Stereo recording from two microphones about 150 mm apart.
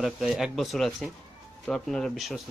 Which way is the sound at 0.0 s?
5° right (ahead or behind).